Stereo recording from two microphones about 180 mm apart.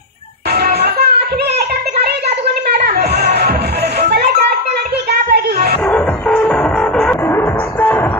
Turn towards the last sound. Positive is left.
turn(degrees=10)  # may be behind; listen again after turning